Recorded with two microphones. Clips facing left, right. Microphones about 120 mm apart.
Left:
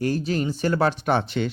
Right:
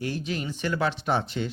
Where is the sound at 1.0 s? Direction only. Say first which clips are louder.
Left 4 dB; 65° left (ahead or behind).